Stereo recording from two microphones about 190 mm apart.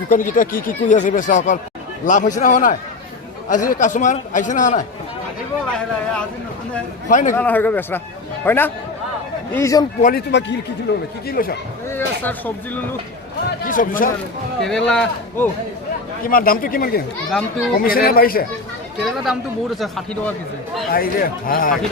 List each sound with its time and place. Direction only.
0.1 s a man's voice: 45° left (ahead or behind)
7.1 s speech: 40° left (ahead or behind)
7.3 s speech: 10° left (ahead or behind)
10.0 s speech: 55° left (ahead or behind)
11.3 s speech: 50° left (ahead or behind)
11.9 s speech: 10° left (ahead or behind)
13.7 s speech: 45° left (ahead or behind)
14.6 s speech: 5° left (ahead or behind)
16.2 s speech: 50° left (ahead or behind)
19.2 s speech: centre (ahead or behind)
20.9 s speech: 50° left (ahead or behind)